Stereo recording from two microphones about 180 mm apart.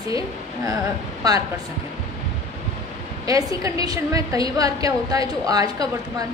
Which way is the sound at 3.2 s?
20° right (ahead or behind).